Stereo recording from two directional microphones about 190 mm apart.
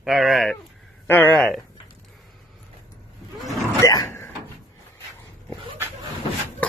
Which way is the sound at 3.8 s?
15° left (ahead or behind).